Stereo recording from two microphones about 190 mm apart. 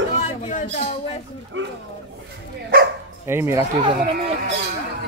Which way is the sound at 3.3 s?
15° right (ahead or behind).